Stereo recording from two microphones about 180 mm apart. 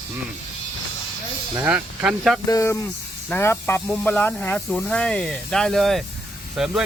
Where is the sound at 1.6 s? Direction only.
10° right (ahead or behind).